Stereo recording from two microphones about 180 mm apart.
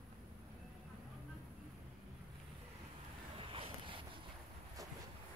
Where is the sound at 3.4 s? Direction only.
30° right (ahead or behind).